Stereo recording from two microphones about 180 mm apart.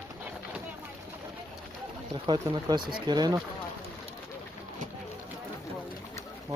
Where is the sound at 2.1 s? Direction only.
25° right (ahead or behind).